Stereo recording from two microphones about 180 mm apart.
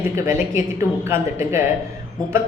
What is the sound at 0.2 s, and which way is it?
A woman's voice, 15° right (ahead or behind).